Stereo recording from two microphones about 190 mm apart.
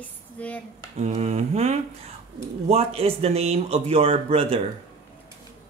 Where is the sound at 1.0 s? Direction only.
35° right (ahead or behind).